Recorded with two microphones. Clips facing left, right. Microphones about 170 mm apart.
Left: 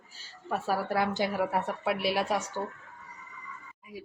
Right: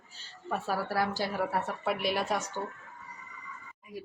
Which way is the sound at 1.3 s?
10° left (ahead or behind).